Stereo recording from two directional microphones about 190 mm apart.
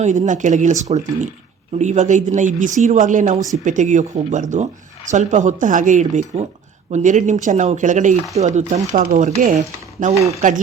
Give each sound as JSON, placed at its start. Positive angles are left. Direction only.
{"t": 0.0, "sound": "speech", "side_deg": -40}